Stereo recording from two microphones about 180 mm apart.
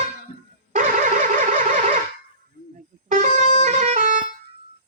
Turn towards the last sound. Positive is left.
turn(degrees=-45)  # may be behind; listen again after turning